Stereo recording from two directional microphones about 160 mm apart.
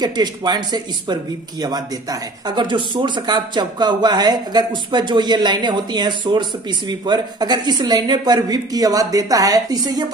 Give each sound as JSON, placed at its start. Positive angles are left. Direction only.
{"t": 0.0, "sound": "speech", "side_deg": -25}